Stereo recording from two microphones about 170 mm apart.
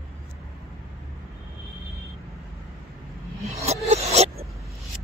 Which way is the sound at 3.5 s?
40° right (ahead or behind).